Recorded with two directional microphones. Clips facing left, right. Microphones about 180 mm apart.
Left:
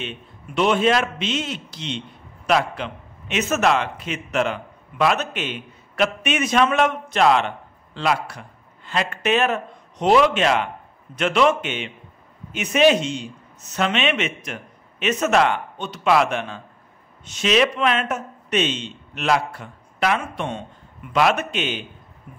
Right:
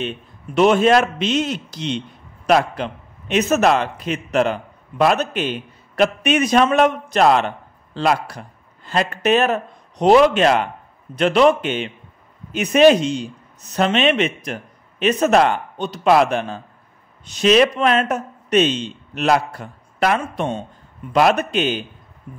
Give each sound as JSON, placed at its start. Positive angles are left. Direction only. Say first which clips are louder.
{"t": 0.6, "sound": "a man's voice", "louder": "right 5 dB", "side_deg": -45}